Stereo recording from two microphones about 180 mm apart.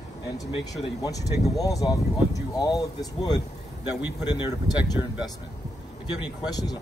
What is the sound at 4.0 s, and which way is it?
Speech, 10° right (ahead or behind).